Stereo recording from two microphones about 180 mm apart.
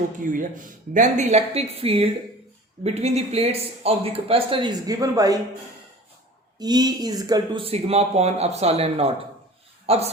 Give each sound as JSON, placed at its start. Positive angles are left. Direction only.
{"t": 0.2, "sound": "speech", "side_deg": -50}
{"t": 6.6, "sound": "speech", "side_deg": -20}